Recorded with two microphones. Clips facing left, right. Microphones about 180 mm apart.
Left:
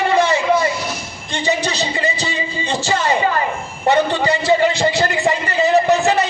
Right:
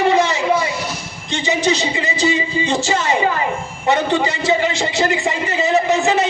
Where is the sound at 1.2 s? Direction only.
60° left (ahead or behind).